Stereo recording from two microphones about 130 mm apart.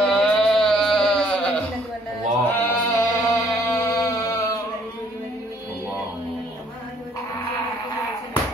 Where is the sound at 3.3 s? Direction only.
25° left (ahead or behind).